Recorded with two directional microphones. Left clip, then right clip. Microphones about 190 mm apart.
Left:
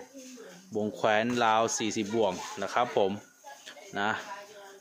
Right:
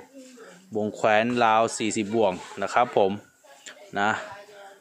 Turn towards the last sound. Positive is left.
turn(degrees=-30)  # may be behind; listen again after turning